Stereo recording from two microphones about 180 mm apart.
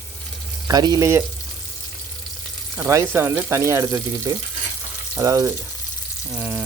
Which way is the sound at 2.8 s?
15° right (ahead or behind).